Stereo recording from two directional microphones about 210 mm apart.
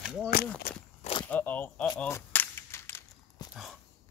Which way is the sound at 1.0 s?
25° left (ahead or behind).